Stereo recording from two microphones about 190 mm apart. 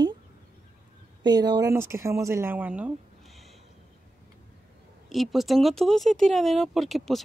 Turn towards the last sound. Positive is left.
turn(degrees=0)  # may be behind; listen again after turning